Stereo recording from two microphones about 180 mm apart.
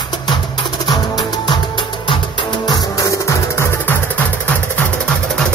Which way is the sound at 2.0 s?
25° left (ahead or behind).